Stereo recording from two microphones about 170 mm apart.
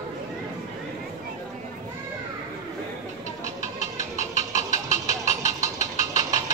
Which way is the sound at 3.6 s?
45° left (ahead or behind).